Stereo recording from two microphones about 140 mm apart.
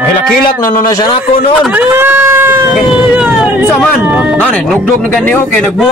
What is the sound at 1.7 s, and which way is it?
Speech, 15° right (ahead or behind).